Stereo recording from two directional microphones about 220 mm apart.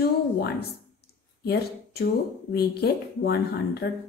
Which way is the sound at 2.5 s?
45° left (ahead or behind).